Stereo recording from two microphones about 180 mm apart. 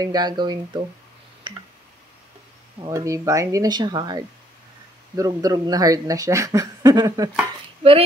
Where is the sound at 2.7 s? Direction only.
20° right (ahead or behind).